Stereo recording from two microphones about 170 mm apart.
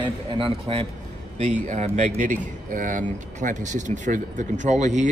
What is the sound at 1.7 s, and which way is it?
Speech, 45° right (ahead or behind).